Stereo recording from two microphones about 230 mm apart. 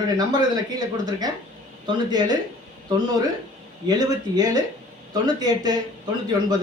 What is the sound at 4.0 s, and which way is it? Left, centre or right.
Speech, centre.